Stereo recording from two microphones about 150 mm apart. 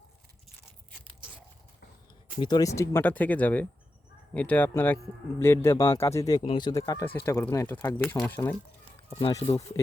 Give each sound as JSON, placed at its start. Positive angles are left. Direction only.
{"t": 2.4, "sound": "speech", "side_deg": 25}